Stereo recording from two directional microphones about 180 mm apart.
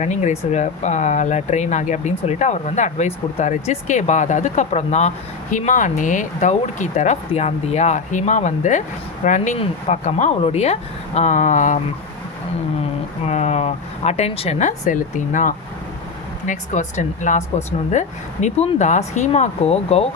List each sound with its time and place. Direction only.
0.0 s speech: 40° left (ahead or behind)
13.2 s speech: 40° left (ahead or behind)